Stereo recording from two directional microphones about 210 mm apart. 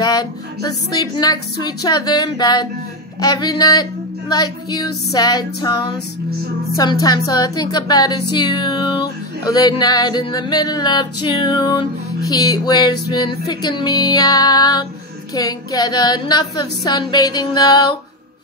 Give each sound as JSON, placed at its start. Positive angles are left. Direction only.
{"t": 0.0, "sound": "speech", "side_deg": 20}